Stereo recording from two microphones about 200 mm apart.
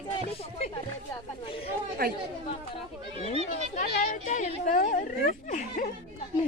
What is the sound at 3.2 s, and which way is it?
Speech, 35° left (ahead or behind).